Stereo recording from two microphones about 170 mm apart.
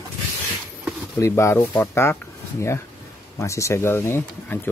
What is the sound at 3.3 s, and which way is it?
Speech, 15° left (ahead or behind).